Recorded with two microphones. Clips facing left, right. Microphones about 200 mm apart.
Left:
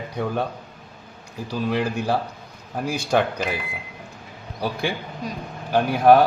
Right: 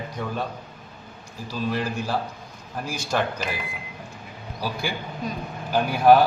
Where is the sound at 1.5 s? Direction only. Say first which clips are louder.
Left 3 dB; 60° left (ahead or behind).